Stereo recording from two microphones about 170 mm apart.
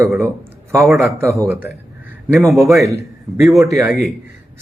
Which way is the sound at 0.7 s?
Centre (ahead or behind).